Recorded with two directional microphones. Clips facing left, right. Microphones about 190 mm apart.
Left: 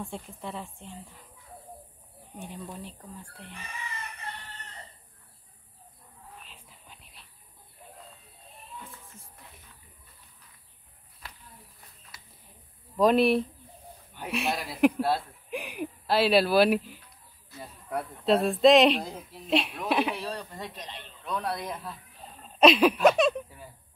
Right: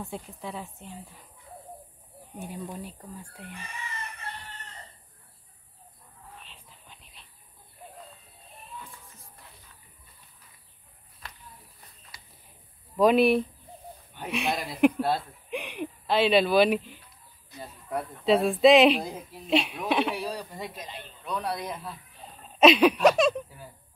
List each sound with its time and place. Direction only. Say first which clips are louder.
0.0 s speech: right 1 dB; centre (ahead or behind)
2.3 s speech: right 3 dB; 10° right (ahead or behind)
6.4 s a sound: even; 5° left (ahead or behind)
12.9 s speech: right 1 dB; centre (ahead or behind)
17.5 s snake: right 1 dB; 20° right (ahead or behind)
17.9 s speech: right 1 dB; centre (ahead or behind)
20.2 s speech: right 2 dB; 10° right (ahead or behind)